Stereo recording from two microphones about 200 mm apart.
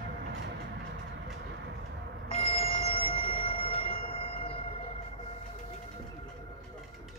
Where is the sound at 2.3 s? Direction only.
30° left (ahead or behind).